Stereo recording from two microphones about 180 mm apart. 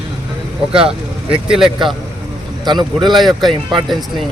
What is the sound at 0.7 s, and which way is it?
Speech, 30° right (ahead or behind).